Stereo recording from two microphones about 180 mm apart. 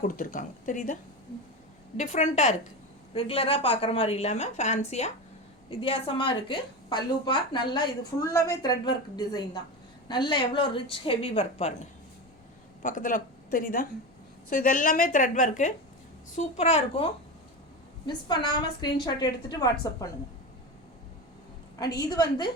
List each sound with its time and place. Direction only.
0.0 s a woman's voice: 45° left (ahead or behind)
2.0 s a woman's voice: 40° left (ahead or behind)
12.8 s a woman's voice: 45° left (ahead or behind); by 20.1 s 20° left (ahead or behind)
21.9 s a woman's voice: 20° left (ahead or behind)